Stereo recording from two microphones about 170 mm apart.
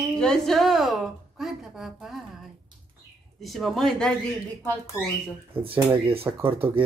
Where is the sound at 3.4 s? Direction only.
Centre (ahead or behind).